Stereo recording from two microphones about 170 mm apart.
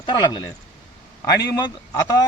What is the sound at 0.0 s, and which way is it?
Speech, 25° left (ahead or behind).